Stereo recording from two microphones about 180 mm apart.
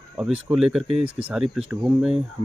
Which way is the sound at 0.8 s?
35° right (ahead or behind).